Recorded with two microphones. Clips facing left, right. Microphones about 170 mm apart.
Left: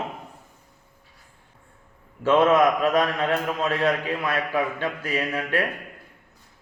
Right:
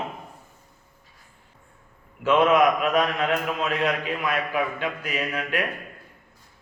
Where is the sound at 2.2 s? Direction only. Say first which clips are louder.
Left 1 dB; 30° left (ahead or behind).